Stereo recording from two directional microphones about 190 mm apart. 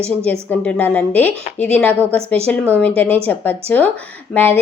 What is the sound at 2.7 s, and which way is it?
A woman's voice, 5° left (ahead or behind).